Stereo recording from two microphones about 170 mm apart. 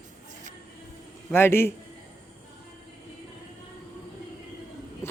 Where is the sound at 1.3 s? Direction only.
15° left (ahead or behind).